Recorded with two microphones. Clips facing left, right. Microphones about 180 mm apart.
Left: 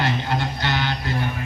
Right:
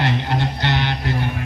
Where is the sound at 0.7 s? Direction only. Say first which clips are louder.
Right 2 dB; 25° right (ahead or behind).